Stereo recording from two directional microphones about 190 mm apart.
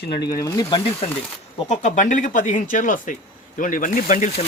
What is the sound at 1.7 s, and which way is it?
Speech, 40° left (ahead or behind).